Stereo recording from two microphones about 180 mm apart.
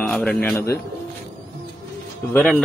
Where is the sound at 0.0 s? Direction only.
5° left (ahead or behind).